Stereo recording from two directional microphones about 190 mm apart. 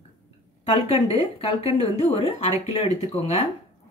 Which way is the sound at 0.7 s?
30° left (ahead or behind).